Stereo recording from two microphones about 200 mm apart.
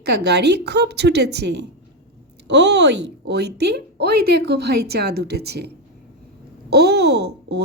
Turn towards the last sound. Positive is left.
turn(degrees=-55)  # may be behind; listen again after turning